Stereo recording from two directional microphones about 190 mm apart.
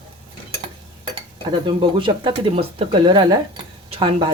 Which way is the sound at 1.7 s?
25° right (ahead or behind).